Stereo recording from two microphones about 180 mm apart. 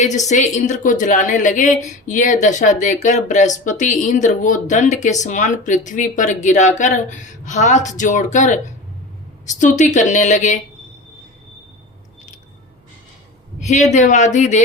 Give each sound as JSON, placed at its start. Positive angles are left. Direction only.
{"t": 0.3, "sound": "a woman's voice", "side_deg": 40}
{"t": 13.6, "sound": "a woman's voice", "side_deg": 40}